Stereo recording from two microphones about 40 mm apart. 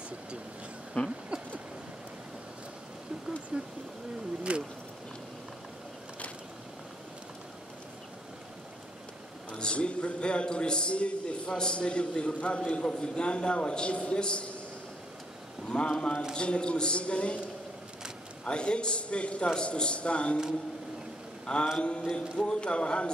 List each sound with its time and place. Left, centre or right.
1.0 s a man's voice: left
1.3 s a sound: right
3.5 s a sound: right
9.5 s a man's voice: left
15.7 s a man's voice: left
18.4 s a man's voice: left
21.7 s a man's voice: left